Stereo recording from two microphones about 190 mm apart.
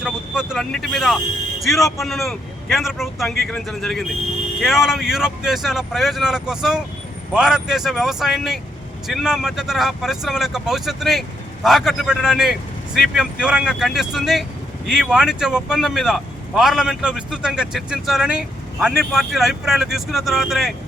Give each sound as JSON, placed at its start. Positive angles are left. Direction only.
{"t": 0.0, "sound": "speech", "side_deg": 0}